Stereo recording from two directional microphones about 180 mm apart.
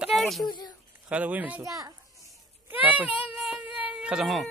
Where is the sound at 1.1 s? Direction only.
10° right (ahead or behind).